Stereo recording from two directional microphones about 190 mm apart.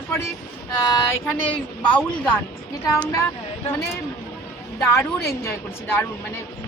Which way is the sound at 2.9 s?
15° left (ahead or behind).